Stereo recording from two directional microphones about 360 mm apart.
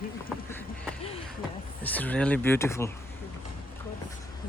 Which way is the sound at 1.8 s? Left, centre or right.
Centre.